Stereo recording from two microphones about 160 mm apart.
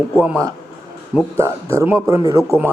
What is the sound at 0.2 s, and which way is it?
A man's voice, 15° right (ahead or behind).